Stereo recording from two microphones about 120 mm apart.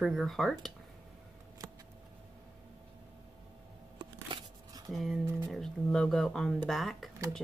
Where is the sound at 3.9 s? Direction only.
40° right (ahead or behind).